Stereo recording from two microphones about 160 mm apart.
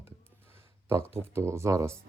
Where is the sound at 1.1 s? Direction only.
15° right (ahead or behind).